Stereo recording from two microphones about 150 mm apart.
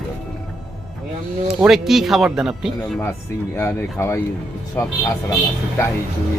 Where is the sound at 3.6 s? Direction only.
15° left (ahead or behind).